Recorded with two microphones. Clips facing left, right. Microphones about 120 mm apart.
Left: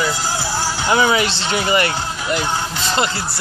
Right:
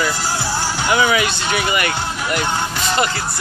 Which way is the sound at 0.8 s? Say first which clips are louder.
Left 1 dB; 25° left (ahead or behind).